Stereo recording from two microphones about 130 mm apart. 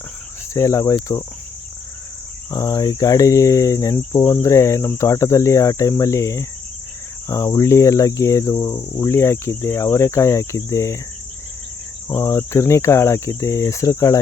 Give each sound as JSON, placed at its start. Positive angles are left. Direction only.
{"t": 0.5, "sound": "cricket", "side_deg": 25}
{"t": 2.5, "sound": "cricket", "side_deg": 30}
{"t": 12.0, "sound": "cricket", "side_deg": 25}